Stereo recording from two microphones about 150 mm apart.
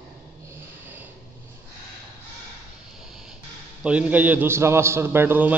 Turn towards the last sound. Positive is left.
turn(degrees=-15)  # may be behind; listen again after turning